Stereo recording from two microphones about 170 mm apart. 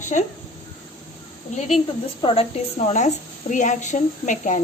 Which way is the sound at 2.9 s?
45° left (ahead or behind).